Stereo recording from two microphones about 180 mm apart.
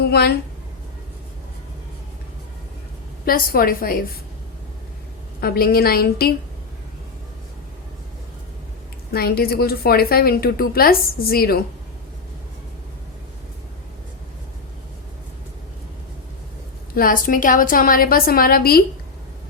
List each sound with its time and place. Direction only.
0.0 s a woman's voice: 60° left (ahead or behind)
3.2 s a woman's voice: 55° left (ahead or behind)
5.4 s a woman's voice: 55° left (ahead or behind)
9.1 s a woman's voice: 60° left (ahead or behind)
16.9 s a woman's voice: 50° left (ahead or behind)